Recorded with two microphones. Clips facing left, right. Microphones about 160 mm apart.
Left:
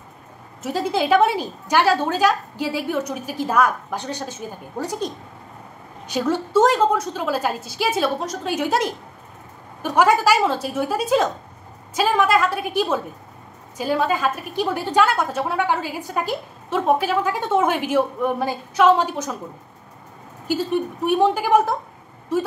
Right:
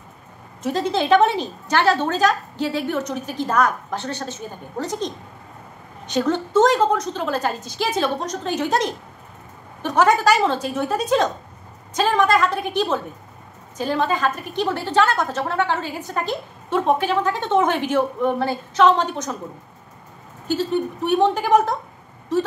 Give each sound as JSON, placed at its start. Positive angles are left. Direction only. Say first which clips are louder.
{"t": 0.6, "sound": "a woman's voice", "louder": "right 1 dB", "side_deg": 5}
{"t": 20.4, "sound": "a woman's voice", "louder": "even", "side_deg": 10}